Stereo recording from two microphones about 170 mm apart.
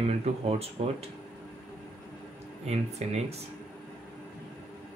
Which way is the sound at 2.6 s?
40° right (ahead or behind).